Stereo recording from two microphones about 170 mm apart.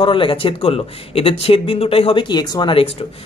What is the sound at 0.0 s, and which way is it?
Speech, 30° left (ahead or behind).